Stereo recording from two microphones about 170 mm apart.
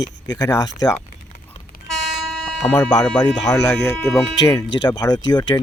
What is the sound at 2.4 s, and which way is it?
Music, 5° left (ahead or behind).